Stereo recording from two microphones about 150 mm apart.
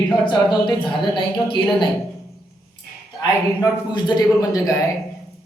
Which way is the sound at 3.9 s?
25° left (ahead or behind).